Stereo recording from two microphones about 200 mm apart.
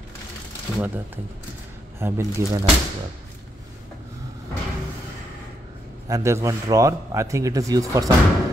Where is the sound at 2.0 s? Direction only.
10° right (ahead or behind).